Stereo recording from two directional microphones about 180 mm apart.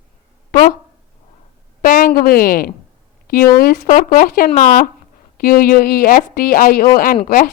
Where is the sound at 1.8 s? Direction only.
50° left (ahead or behind).